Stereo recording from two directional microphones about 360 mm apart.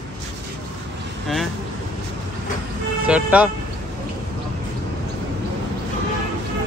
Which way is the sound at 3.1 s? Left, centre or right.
Centre.